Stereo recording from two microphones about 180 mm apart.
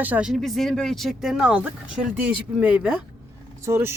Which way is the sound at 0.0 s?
5° right (ahead or behind).